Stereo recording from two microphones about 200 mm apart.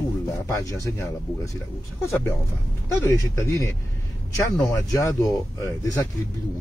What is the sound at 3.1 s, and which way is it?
Speech, 15° left (ahead or behind).